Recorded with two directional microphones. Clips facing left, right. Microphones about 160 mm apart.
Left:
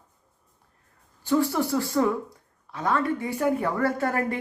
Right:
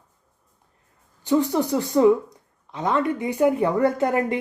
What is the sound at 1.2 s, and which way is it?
Speech, 20° right (ahead or behind).